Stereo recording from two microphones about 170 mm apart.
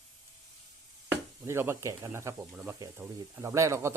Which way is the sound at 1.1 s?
15° right (ahead or behind).